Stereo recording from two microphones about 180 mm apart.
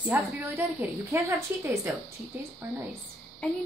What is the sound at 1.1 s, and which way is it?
Speech, 15° right (ahead or behind).